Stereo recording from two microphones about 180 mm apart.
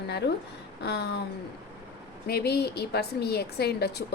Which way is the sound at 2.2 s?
60° left (ahead or behind).